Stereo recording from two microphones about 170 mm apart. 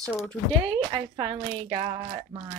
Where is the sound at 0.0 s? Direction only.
5° left (ahead or behind).